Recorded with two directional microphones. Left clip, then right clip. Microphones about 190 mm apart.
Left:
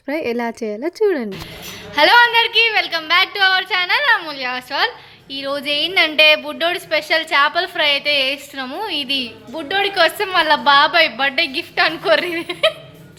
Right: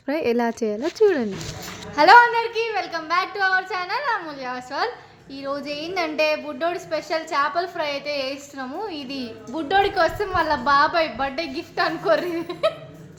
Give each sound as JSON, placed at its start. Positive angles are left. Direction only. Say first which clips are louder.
{"t": 0.0, "sound": "speech", "louder": "left 1 dB", "side_deg": 20}
{"t": 2.0, "sound": "a woman's voice", "louder": "left 2 dB", "side_deg": 0}
{"t": 9.6, "sound": "a woman's voice", "louder": "left 1 dB", "side_deg": -20}
{"t": 10.2, "sound": "a woman's voice", "louder": "left 6 dB", "side_deg": 5}